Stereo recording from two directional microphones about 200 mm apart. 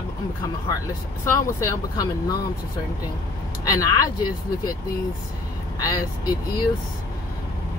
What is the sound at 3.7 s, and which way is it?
Speech, 15° left (ahead or behind).